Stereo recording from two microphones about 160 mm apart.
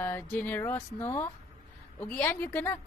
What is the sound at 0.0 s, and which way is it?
A woman's voice, 10° left (ahead or behind).